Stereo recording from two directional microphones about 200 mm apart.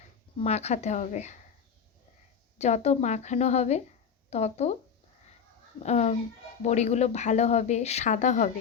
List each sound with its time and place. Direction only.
0.3 s speech: 30° left (ahead or behind)
2.6 s speech: 35° left (ahead or behind)
5.8 s speech: 35° left (ahead or behind)